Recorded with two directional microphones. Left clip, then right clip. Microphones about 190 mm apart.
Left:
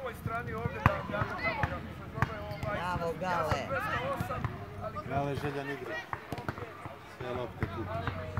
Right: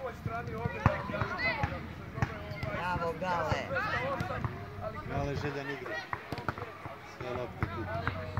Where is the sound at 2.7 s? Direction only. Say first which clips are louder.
Right 2 dB; 55° left (ahead or behind).